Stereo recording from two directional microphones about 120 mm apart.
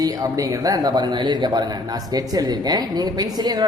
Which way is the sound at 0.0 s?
30° right (ahead or behind).